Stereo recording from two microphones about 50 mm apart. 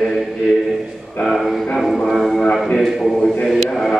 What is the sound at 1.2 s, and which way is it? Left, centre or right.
A man's voice, centre.